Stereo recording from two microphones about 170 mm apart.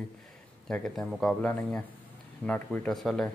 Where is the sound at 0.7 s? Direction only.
5° left (ahead or behind).